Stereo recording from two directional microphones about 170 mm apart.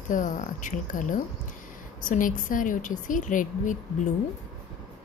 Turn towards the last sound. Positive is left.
turn(degrees=50)  # may be behind; listen again after turning